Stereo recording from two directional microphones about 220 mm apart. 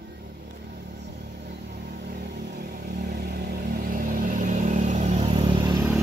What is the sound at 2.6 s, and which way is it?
Vehicle, 45° right (ahead or behind).